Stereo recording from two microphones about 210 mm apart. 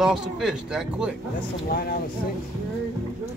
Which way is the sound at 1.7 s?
45° left (ahead or behind).